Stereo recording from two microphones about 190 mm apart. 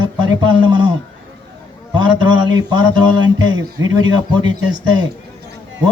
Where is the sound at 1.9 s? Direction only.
25° right (ahead or behind).